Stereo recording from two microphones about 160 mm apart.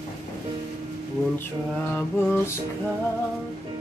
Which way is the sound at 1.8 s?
10° left (ahead or behind).